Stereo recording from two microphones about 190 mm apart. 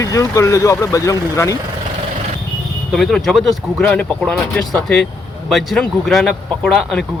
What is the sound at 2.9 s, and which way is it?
Speech, centre (ahead or behind).